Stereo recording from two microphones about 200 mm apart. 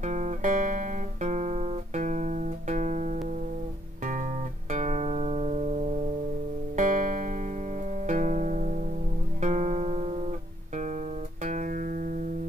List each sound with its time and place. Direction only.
0.0 s guitar: 35° right (ahead or behind)
4.0 s music: 40° right (ahead or behind)
6.8 s music: 40° right (ahead or behind)
11.4 s music: 40° right (ahead or behind)